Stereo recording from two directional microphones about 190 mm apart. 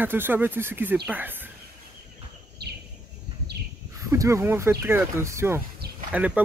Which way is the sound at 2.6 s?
60° right (ahead or behind).